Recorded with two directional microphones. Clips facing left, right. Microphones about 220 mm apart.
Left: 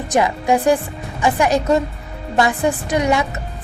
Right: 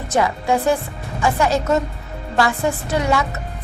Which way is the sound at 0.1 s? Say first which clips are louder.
Left 2 dB; 15° left (ahead or behind).